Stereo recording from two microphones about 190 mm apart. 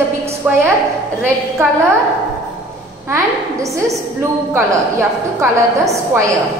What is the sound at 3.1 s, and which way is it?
A woman's voice, 15° right (ahead or behind).